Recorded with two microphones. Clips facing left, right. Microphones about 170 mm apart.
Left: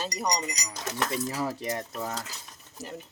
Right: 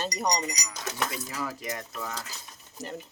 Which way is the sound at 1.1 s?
30° left (ahead or behind).